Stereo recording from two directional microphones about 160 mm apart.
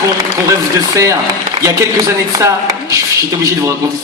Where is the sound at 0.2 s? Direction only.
20° right (ahead or behind).